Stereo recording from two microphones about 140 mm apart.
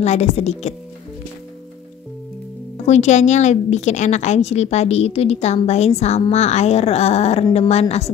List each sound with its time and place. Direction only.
0.0 s a woman's voice: 55° left (ahead or behind)
2.8 s a woman's voice: 55° left (ahead or behind)